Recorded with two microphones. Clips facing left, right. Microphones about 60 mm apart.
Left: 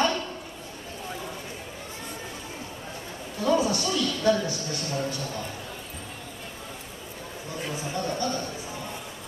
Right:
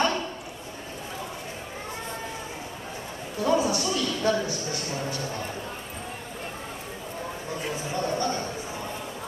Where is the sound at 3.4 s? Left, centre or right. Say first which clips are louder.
Even; centre.